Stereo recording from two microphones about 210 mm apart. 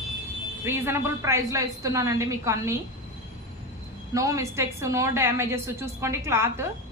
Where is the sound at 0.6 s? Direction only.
10° right (ahead or behind).